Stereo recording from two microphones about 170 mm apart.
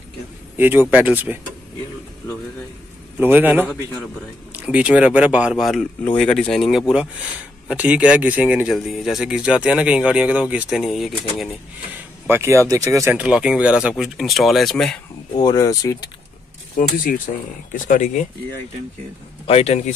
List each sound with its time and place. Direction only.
0.6 s speech: 10° right (ahead or behind)
3.2 s speech: 10° right (ahead or behind)
7.6 s speech: 10° right (ahead or behind)
12.3 s speech: 15° right (ahead or behind); by 15.0 s centre (ahead or behind)
15.3 s speech: 25° left (ahead or behind)
16.7 s speech: 55° left (ahead or behind)
19.4 s a man's voice: 35° left (ahead or behind)